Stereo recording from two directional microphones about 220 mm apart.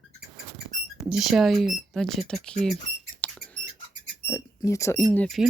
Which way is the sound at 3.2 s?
5° left (ahead or behind).